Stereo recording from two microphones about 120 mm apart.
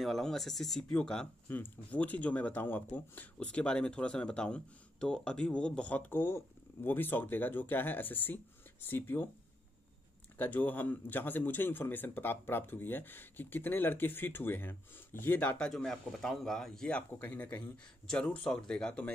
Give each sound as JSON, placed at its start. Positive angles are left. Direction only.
{"t": 0.0, "sound": "speech", "side_deg": 0}
{"t": 10.3, "sound": "speech", "side_deg": 15}